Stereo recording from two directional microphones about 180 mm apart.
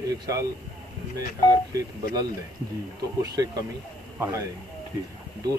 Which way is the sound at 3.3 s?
20° right (ahead or behind).